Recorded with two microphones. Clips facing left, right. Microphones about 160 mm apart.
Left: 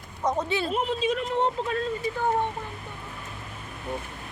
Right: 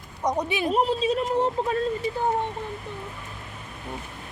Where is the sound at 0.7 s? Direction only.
35° right (ahead or behind).